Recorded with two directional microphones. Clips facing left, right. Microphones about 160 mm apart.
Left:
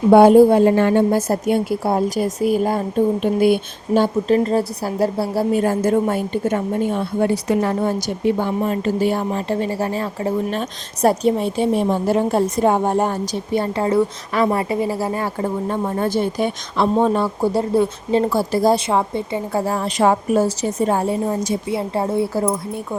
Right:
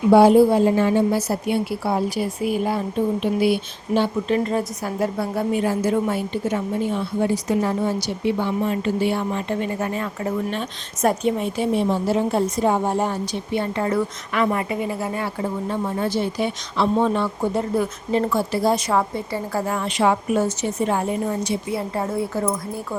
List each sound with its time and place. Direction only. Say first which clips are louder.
0.1 s a woman's voice: left 4 dB; 50° left (ahead or behind); by 5.6 s 35° left (ahead or behind)
5.6 s a woman's voice: left 3 dB; 50° left (ahead or behind); by 11.7 s 30° left (ahead or behind)
11.7 s a woman's voice: left 1 dB; 45° left (ahead or behind)
15.7 s speech: left 2 dB; 45° left (ahead or behind)
18.9 s speech: left 2 dB; 25° left (ahead or behind)
21.7 s a woman's voice: left 4 dB; 25° left (ahead or behind)